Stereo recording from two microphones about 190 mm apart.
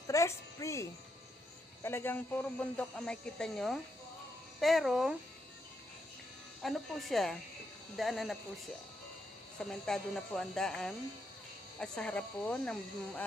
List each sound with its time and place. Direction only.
0.1 s speech: 15° left (ahead or behind); by 5.1 s centre (ahead or behind)
6.6 s speech: centre (ahead or behind)
9.6 s speech: 5° left (ahead or behind)